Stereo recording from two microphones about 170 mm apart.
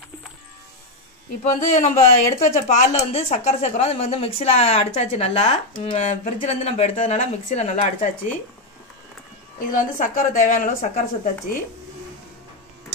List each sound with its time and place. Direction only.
1.4 s speech: 45° left (ahead or behind)
9.6 s a woman's voice: 50° left (ahead or behind)